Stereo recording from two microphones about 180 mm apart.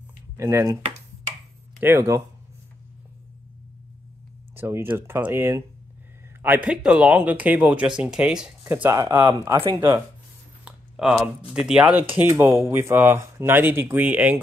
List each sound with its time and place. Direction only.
0.4 s speech: 15° right (ahead or behind)
1.8 s speech: 10° right (ahead or behind)
4.6 s speech: 15° right (ahead or behind)
8.8 s speech: 15° right (ahead or behind)
10.6 s a sound: 5° right (ahead or behind)
11.5 s speech: 5° right (ahead or behind)